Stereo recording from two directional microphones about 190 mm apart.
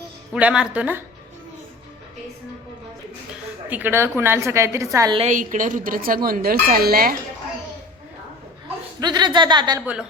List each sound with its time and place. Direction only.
0.3 s a woman's voice: 5° right (ahead or behind)
3.7 s a woman's voice: 10° right (ahead or behind)
5.1 s a woman's voice: 40° right (ahead or behind)
9.0 s speech: 20° right (ahead or behind)
9.8 s a woman's voice: 5° right (ahead or behind)